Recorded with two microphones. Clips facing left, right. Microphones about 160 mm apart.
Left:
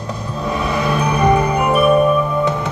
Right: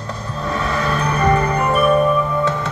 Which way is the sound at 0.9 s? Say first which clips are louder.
Left 2 dB; 10° left (ahead or behind).